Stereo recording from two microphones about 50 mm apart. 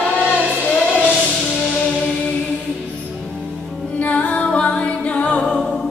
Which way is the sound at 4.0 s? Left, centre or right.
Left.